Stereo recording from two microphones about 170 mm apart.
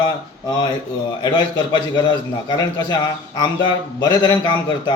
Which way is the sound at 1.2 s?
25° left (ahead or behind).